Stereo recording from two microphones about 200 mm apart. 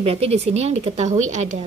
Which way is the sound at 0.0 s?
30° right (ahead or behind).